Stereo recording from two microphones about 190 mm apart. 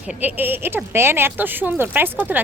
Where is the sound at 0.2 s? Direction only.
10° right (ahead or behind).